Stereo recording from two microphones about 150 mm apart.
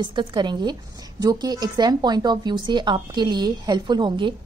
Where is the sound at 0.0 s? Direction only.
30° right (ahead or behind).